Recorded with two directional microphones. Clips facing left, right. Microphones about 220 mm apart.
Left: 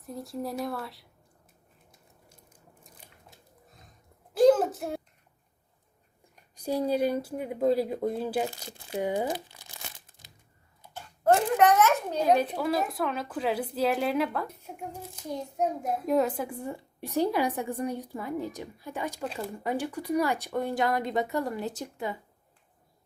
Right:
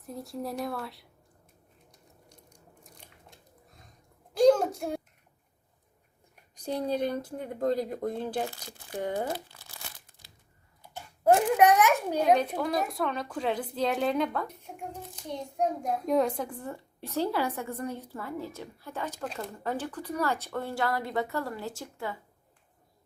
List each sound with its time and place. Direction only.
0.0 s speech: centre (ahead or behind)
3.0 s a sound: 5° left (ahead or behind)
6.6 s a child's voice: 10° left (ahead or behind)
10.9 s a child's voice: 10° right (ahead or behind)
12.2 s a child's voice: 5° left (ahead or behind)